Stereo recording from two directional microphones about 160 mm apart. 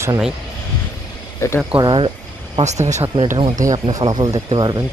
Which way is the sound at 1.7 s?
30° right (ahead or behind).